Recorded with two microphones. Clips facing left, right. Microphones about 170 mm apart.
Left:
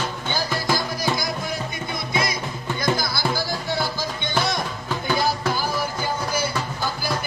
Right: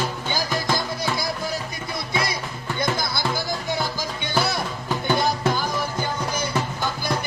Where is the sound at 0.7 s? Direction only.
30° right (ahead or behind).